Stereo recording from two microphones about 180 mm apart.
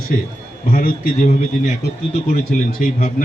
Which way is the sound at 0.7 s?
55° left (ahead or behind).